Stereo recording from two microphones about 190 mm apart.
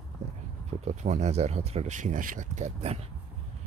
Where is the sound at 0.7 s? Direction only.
35° right (ahead or behind).